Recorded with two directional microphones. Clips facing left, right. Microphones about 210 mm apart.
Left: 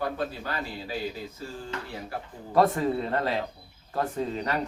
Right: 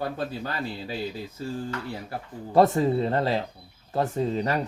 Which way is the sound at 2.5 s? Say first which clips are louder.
Right 3 dB; 25° right (ahead or behind).